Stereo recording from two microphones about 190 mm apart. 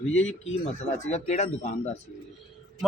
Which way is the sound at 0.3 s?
35° left (ahead or behind).